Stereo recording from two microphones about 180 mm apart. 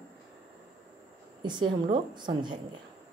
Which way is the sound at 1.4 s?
25° right (ahead or behind).